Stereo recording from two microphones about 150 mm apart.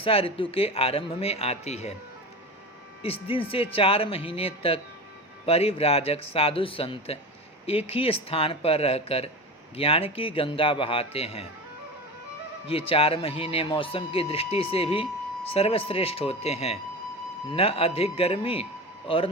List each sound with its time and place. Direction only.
0.0 s speech: 40° left (ahead or behind)
3.0 s speech: 40° left (ahead or behind)
12.6 s speech: 40° left (ahead or behind)